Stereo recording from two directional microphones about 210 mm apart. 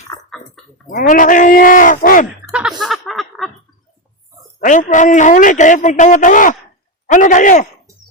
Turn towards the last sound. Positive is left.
turn(degrees=35)  # may be behind; listen again after turning